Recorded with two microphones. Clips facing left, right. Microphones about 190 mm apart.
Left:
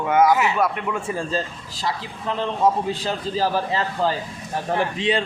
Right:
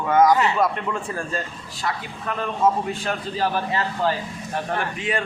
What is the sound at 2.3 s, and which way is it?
Speech, 25° left (ahead or behind).